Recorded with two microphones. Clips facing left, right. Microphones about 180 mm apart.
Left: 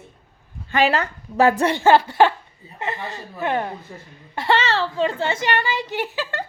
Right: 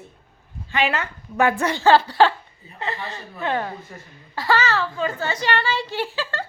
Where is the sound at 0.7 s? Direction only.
40° left (ahead or behind).